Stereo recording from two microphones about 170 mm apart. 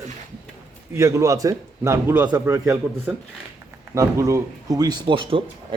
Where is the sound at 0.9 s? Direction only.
15° right (ahead or behind).